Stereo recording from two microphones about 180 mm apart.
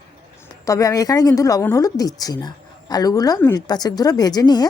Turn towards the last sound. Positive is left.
turn(degrees=20)  # may be behind; listen again after turning